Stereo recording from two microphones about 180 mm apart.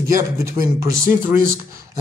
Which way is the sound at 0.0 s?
15° right (ahead or behind).